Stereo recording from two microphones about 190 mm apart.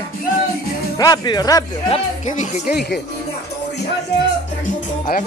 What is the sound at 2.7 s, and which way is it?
Speech, 60° left (ahead or behind).